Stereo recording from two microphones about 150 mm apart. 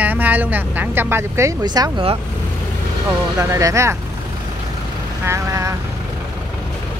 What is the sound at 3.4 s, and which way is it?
Speech, 20° right (ahead or behind).